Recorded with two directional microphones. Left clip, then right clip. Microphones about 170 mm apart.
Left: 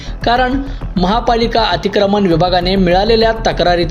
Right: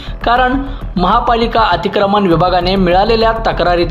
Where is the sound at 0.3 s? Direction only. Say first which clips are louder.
Right 2 dB; 35° left (ahead or behind).